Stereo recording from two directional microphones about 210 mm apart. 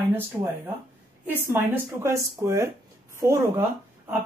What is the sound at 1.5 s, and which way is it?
Speech, 10° right (ahead or behind).